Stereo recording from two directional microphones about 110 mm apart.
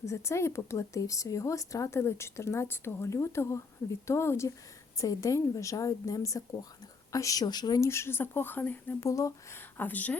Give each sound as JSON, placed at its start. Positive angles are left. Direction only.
{"t": 0.0, "sound": "a woman's voice", "side_deg": 25}
{"t": 7.8, "sound": "speech", "side_deg": 25}
{"t": 9.0, "sound": "speech", "side_deg": 30}